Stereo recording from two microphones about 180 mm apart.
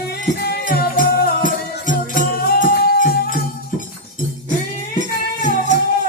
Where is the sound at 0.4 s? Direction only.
55° left (ahead or behind).